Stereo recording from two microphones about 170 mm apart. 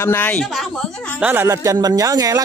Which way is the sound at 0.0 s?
10° left (ahead or behind).